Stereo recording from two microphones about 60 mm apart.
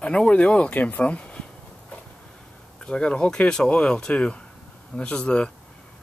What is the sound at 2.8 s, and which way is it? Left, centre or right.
Speech, centre.